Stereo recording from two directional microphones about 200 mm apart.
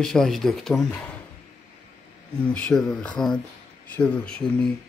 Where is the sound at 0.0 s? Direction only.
Centre (ahead or behind).